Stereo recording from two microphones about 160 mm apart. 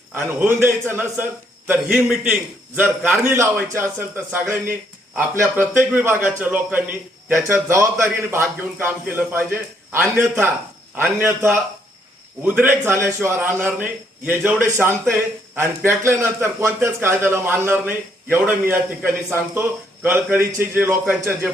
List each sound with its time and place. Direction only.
0.1 s a man's voice: 10° right (ahead or behind)